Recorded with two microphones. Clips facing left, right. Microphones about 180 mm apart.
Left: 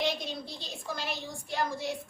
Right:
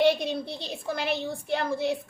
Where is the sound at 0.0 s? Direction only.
60° right (ahead or behind).